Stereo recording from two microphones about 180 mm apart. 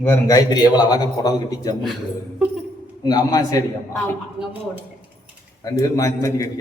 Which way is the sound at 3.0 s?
20° left (ahead or behind).